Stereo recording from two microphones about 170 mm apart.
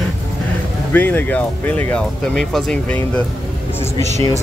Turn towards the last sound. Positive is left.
turn(degrees=-40)  # may be behind; listen again after turning